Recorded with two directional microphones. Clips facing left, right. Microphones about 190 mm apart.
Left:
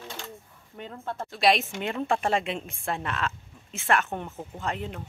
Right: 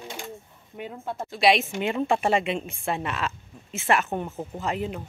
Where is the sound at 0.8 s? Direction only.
10° right (ahead or behind).